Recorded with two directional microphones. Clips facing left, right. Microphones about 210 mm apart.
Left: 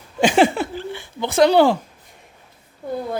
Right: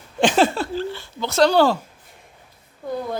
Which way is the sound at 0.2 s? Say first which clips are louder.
Left 2 dB; 10° left (ahead or behind).